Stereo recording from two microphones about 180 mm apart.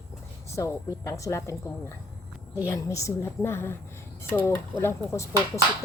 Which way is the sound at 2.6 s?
15° left (ahead or behind).